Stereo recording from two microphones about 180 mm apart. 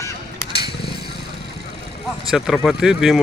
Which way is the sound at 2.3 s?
Centre (ahead or behind).